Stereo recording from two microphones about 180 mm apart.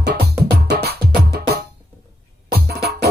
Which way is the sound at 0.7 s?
60° right (ahead or behind).